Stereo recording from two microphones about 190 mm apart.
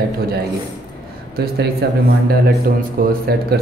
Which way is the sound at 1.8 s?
60° right (ahead or behind).